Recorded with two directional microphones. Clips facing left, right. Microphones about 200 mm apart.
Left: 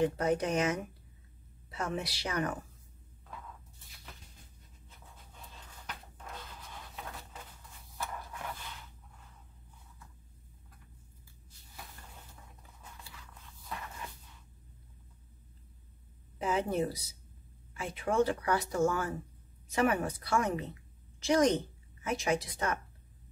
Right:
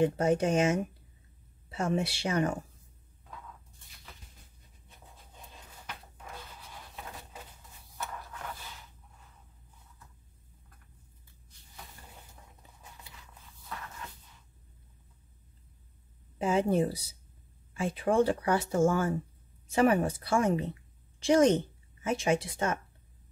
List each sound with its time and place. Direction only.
0.0 s speech: 25° right (ahead or behind)
16.3 s a woman's voice: 30° right (ahead or behind)